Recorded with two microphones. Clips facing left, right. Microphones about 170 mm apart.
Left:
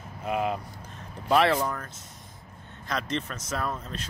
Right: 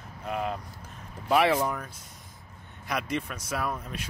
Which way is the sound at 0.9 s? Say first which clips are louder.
Left 1 dB; 10° right (ahead or behind).